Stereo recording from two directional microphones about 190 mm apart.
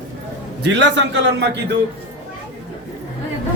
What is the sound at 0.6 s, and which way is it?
Speech, 70° right (ahead or behind).